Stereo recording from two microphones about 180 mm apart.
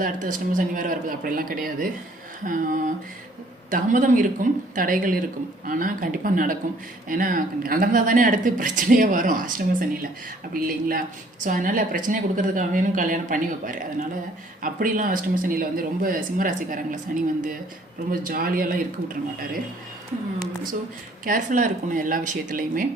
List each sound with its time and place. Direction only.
0.0 s speech: 45° right (ahead or behind)
10.5 s speech: 55° right (ahead or behind)
21.2 s speech: 45° right (ahead or behind)